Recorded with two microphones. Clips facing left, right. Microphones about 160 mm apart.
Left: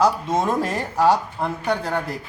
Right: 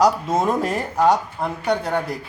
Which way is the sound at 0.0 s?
10° right (ahead or behind).